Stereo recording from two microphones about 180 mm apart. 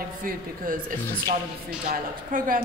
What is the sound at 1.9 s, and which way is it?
Speech, 50° right (ahead or behind).